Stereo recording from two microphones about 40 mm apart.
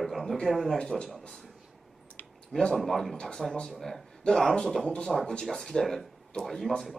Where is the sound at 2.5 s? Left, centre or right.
Centre.